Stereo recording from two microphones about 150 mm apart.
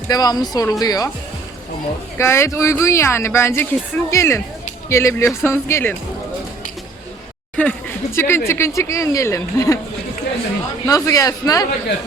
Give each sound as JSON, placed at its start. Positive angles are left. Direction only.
{"t": 0.1, "sound": "speech", "side_deg": 25}
{"t": 2.1, "sound": "speech", "side_deg": 20}
{"t": 7.5, "sound": "a sound", "side_deg": 10}
{"t": 8.4, "sound": "speech", "side_deg": 20}
{"t": 10.8, "sound": "speech", "side_deg": 25}